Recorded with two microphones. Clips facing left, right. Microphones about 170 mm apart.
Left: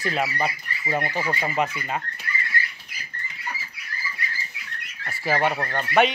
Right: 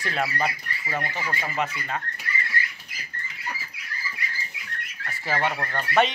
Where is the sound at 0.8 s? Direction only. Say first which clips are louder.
Left 5 dB; 15° left (ahead or behind).